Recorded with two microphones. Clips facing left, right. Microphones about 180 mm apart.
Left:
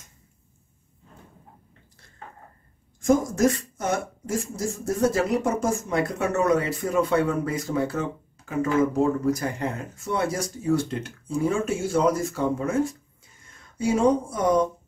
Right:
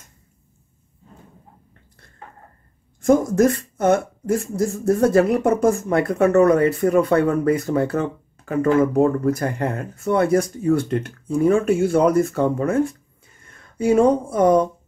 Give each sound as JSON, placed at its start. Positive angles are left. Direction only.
{"t": 3.0, "sound": "speech", "side_deg": -55}